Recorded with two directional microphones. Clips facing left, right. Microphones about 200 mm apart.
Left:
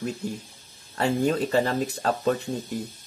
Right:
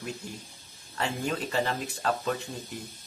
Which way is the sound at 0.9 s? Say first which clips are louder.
Left 8 dB; 40° left (ahead or behind).